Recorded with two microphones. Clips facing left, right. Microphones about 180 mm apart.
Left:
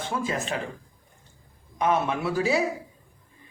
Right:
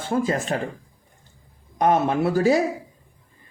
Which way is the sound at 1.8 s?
45° right (ahead or behind).